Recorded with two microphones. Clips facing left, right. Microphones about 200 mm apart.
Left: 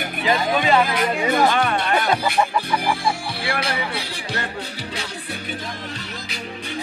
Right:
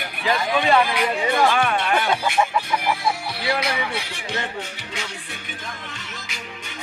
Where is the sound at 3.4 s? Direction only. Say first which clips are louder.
Right 2 dB; 30° left (ahead or behind).